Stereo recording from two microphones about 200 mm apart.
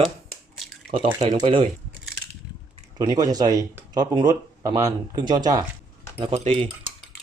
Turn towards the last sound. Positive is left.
turn(degrees=-25)  # may be behind; listen again after turning